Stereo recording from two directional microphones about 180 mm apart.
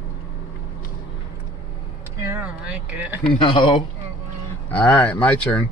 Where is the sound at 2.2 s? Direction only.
10° right (ahead or behind).